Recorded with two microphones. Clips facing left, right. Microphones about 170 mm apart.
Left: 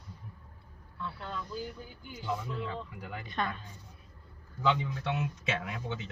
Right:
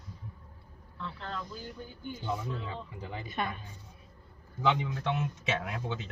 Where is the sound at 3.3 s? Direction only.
10° right (ahead or behind).